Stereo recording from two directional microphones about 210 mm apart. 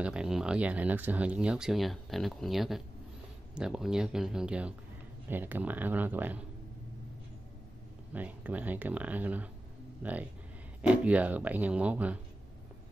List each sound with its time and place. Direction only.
0.0 s speech: 5° right (ahead or behind)
8.1 s speech: 10° right (ahead or behind)